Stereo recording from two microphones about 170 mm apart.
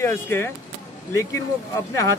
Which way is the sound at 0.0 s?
15° left (ahead or behind).